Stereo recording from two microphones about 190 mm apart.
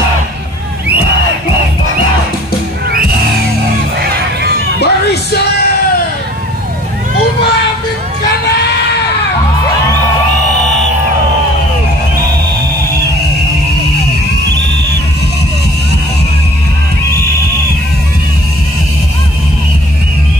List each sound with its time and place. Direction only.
4.0 s music: 55° right (ahead or behind)
4.7 s music: 60° left (ahead or behind)